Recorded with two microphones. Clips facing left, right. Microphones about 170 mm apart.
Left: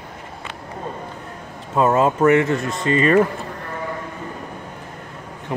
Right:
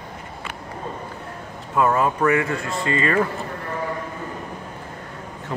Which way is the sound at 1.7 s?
25° left (ahead or behind).